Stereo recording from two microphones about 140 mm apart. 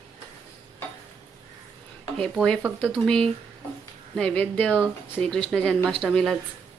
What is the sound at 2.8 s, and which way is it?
Speech, 5° left (ahead or behind).